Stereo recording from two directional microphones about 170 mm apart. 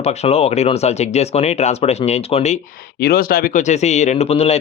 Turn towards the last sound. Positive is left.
turn(degrees=35)  # may be behind; listen again after turning